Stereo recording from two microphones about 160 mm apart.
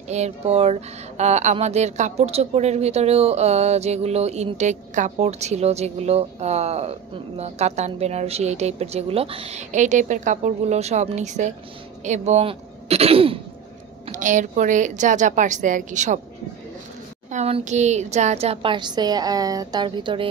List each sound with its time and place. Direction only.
0.1 s speech: 40° right (ahead or behind)
14.1 s speech: 50° right (ahead or behind)
17.3 s a woman's voice: 40° right (ahead or behind)